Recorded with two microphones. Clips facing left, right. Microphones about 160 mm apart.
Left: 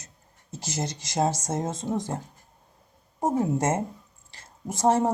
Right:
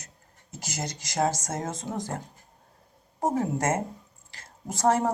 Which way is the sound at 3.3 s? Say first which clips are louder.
Left 3 dB; 25° left (ahead or behind).